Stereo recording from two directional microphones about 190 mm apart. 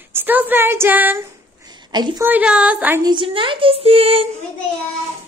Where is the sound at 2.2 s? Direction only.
5° right (ahead or behind).